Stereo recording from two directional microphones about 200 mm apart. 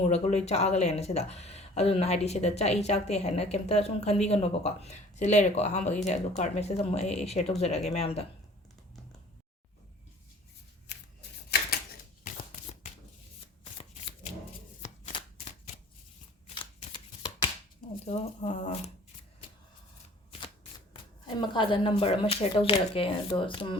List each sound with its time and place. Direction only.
0.0 s speech: 35° left (ahead or behind)
10.9 s shuffling cards: 60° left (ahead or behind)
12.2 s shuffling cards: 40° left (ahead or behind)
13.7 s shuffling cards: 30° left (ahead or behind)
16.6 s shuffling cards: 25° left (ahead or behind)
18.0 s speech: 35° left (ahead or behind)
20.4 s speech: 25° left (ahead or behind)